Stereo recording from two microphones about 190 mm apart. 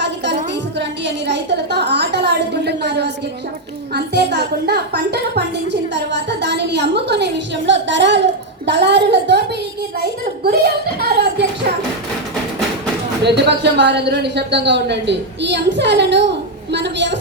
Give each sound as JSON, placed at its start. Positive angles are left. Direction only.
{"t": 0.8, "sound": "a sound", "side_deg": -65}
{"t": 3.9, "sound": "a woman's voice", "side_deg": -60}
{"t": 10.4, "sound": "a child's voice", "side_deg": -55}
{"t": 13.2, "sound": "a woman's voice", "side_deg": -65}